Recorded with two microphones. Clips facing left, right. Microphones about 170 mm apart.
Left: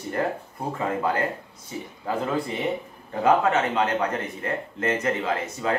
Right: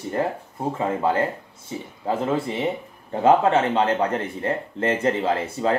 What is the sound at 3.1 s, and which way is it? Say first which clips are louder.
Speech: right 3 dB; 30° right (ahead or behind).